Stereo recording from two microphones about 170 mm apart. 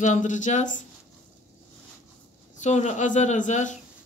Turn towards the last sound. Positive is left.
turn(degrees=45)  # may be behind; listen again after turning